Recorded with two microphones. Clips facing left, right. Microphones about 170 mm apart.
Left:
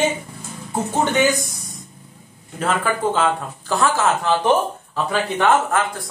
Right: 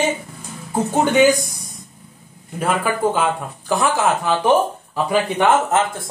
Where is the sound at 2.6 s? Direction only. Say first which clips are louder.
Right 2 dB; 10° right (ahead or behind).